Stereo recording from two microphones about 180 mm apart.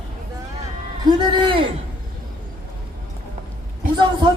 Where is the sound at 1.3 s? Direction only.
25° right (ahead or behind).